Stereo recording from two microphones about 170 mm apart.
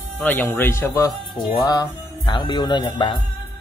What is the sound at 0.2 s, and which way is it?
A man's voice, 10° left (ahead or behind).